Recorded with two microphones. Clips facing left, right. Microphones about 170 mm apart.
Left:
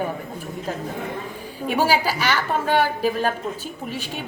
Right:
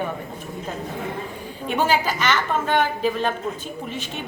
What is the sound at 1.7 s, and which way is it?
A woman's voice, 10° left (ahead or behind).